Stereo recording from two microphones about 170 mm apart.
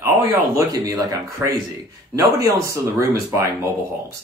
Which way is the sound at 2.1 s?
20° right (ahead or behind).